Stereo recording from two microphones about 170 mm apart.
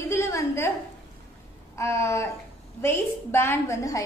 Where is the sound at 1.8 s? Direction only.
15° left (ahead or behind).